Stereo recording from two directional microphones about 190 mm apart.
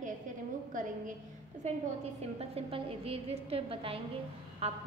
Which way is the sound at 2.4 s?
30° right (ahead or behind).